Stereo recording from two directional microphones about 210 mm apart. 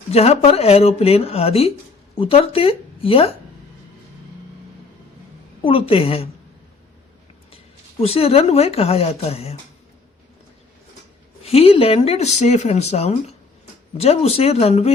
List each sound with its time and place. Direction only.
0.1 s speech: 30° left (ahead or behind)
5.6 s speech: 25° left (ahead or behind)
8.0 s speech: 30° left (ahead or behind)
11.4 s speech: 30° left (ahead or behind)